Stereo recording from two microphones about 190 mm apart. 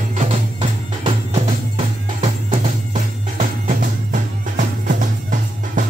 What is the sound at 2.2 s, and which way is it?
Music, 35° right (ahead or behind).